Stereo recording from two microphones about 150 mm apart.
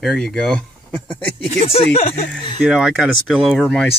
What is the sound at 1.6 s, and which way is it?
Speech, 40° left (ahead or behind).